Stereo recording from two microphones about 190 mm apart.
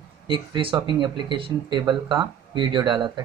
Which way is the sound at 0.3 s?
25° right (ahead or behind).